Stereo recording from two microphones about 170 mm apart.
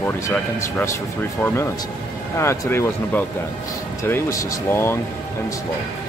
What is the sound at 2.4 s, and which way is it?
Speech, 15° left (ahead or behind).